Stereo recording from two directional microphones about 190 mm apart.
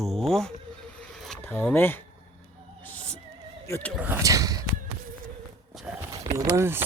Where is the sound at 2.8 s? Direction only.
10° left (ahead or behind).